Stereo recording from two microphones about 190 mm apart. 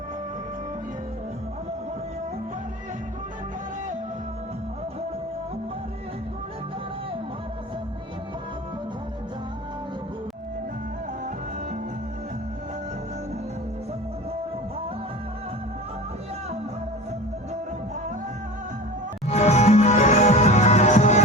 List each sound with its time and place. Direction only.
19.3 s music: 35° left (ahead or behind)